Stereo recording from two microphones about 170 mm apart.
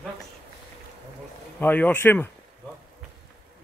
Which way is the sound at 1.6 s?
10° left (ahead or behind).